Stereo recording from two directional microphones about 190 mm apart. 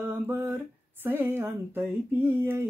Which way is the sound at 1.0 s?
10° right (ahead or behind).